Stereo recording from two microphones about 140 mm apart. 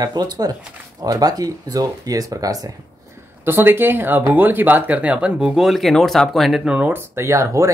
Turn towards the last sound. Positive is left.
turn(degrees=-20)  # may be behind; listen again after turning